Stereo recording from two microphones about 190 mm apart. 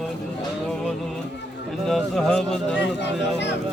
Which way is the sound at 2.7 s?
65° left (ahead or behind).